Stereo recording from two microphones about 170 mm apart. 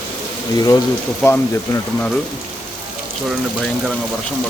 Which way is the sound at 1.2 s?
10° left (ahead or behind).